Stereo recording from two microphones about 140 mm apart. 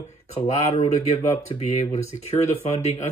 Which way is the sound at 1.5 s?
40° left (ahead or behind).